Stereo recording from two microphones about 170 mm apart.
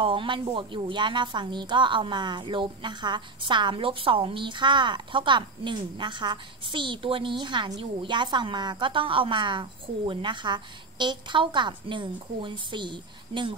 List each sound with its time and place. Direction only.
0.0 s speech: 30° right (ahead or behind)